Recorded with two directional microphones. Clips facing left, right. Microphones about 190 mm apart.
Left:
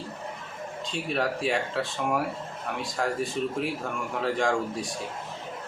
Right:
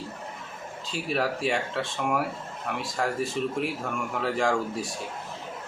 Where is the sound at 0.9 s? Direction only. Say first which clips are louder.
Right 1 dB; centre (ahead or behind).